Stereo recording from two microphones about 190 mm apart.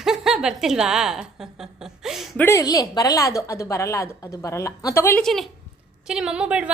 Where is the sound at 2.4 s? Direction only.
15° left (ahead or behind); by 6.7 s 5° right (ahead or behind).